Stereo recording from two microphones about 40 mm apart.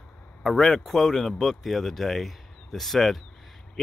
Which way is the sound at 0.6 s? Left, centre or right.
Centre.